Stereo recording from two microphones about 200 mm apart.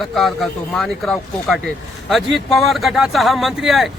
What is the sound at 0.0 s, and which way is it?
Speech, centre (ahead or behind).